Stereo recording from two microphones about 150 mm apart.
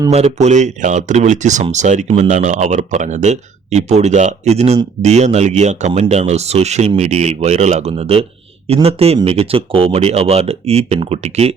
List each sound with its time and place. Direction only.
0.3 s a man's voice: 50° right (ahead or behind)